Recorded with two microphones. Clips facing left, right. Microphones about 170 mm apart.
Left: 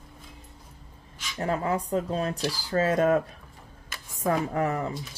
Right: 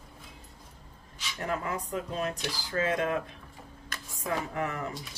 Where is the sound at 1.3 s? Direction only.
30° left (ahead or behind).